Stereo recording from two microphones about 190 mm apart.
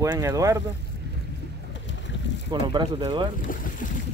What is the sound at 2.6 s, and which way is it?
Speech, 25° right (ahead or behind).